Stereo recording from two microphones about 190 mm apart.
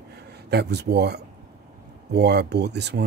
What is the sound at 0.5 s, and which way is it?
Speech, 60° right (ahead or behind).